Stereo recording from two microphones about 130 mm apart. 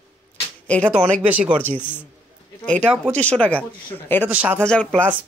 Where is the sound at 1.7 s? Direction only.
15° left (ahead or behind).